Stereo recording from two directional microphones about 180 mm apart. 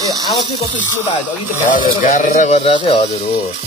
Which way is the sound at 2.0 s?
50° left (ahead or behind).